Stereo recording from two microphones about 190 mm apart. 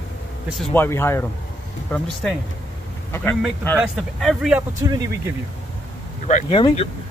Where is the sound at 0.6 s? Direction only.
10° left (ahead or behind).